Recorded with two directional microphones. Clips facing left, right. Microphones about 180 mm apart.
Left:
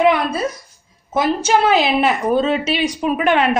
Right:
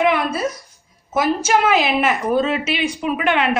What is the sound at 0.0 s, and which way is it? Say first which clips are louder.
A woman's voice: left 2 dB; 30° left (ahead or behind).